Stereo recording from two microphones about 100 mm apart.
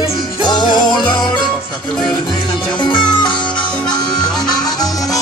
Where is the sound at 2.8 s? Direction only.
50° left (ahead or behind).